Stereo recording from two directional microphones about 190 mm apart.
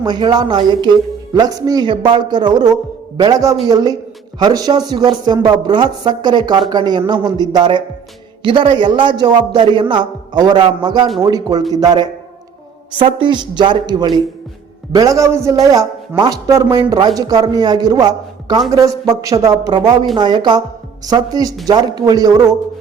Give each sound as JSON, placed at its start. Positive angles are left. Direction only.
{"t": 0.0, "sound": "speech", "side_deg": -20}